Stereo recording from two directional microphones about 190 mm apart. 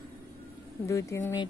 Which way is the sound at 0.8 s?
15° left (ahead or behind).